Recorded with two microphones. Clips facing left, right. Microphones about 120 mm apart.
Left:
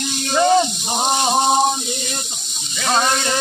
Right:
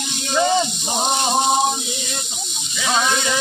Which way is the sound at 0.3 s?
Centre (ahead or behind).